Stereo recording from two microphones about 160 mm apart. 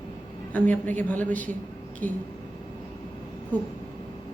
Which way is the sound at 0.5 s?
10° left (ahead or behind).